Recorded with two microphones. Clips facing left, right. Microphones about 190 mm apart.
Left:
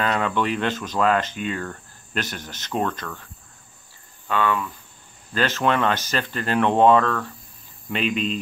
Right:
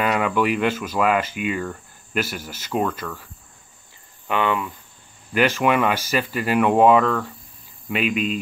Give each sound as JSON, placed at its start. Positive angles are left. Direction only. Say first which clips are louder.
{"t": 0.0, "sound": "speech", "louder": "right 2 dB", "side_deg": -10}
{"t": 4.3, "sound": "speech", "louder": "right 1 dB", "side_deg": -20}